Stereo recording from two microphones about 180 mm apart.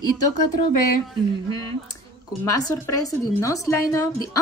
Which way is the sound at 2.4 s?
20° left (ahead or behind).